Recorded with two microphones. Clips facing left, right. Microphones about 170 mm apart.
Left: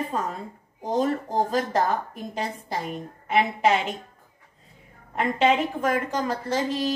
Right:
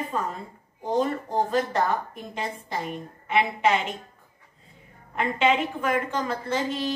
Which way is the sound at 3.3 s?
40° left (ahead or behind).